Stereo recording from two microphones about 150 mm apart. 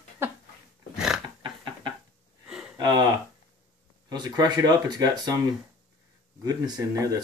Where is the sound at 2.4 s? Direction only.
5° right (ahead or behind).